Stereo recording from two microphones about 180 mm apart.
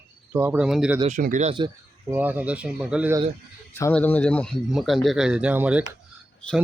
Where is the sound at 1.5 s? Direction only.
25° right (ahead or behind).